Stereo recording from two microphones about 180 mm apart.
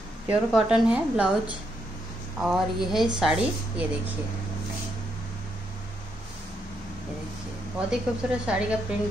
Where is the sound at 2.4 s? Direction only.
Centre (ahead or behind).